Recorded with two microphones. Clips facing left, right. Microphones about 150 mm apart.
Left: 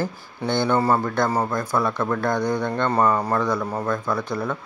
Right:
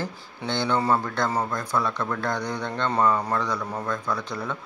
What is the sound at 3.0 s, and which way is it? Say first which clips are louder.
Speech: left 3 dB; 20° left (ahead or behind).